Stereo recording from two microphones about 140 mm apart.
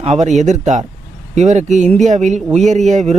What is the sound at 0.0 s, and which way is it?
A man's voice, 50° right (ahead or behind).